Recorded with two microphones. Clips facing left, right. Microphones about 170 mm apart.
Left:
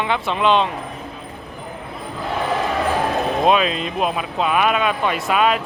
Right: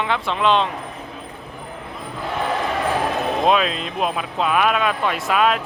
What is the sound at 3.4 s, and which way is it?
Speech, centre (ahead or behind).